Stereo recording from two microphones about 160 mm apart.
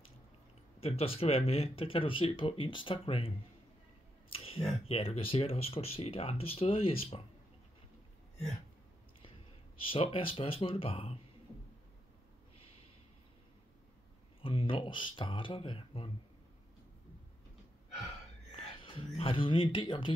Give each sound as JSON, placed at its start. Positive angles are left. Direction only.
{"t": 0.7, "sound": "speech", "side_deg": 35}
{"t": 4.4, "sound": "a sound", "side_deg": 35}
{"t": 4.8, "sound": "speech", "side_deg": 35}
{"t": 9.8, "sound": "speech", "side_deg": 35}
{"t": 14.4, "sound": "speech", "side_deg": 35}
{"t": 18.6, "sound": "speech", "side_deg": 35}